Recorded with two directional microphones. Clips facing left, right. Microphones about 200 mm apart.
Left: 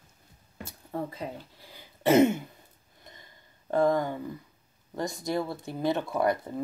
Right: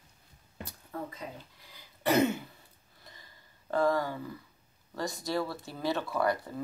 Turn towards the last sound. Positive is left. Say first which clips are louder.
# left 3 dB
turn(degrees=20)  # may be behind; listen again after turning